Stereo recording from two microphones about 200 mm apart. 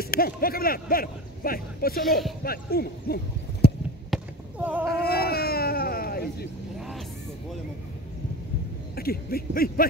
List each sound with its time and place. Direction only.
0.0 s speech: 50° left (ahead or behind)
3.6 s a sound: 55° left (ahead or behind)
4.1 s basketball bounce: 5° right (ahead or behind)
4.8 s baby cry: 50° left (ahead or behind)
8.9 s speech: 50° left (ahead or behind)